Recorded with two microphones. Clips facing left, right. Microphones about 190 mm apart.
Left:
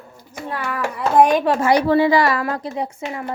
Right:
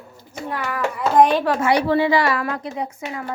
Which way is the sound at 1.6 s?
40° left (ahead or behind).